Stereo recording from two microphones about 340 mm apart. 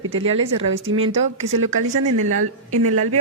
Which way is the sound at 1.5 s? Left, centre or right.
Right.